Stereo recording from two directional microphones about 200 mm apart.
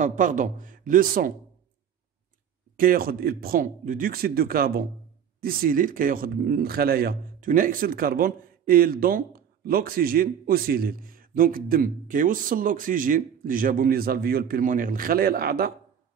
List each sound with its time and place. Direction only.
0.0 s speech: 40° right (ahead or behind)
2.8 s a man's voice: 45° right (ahead or behind)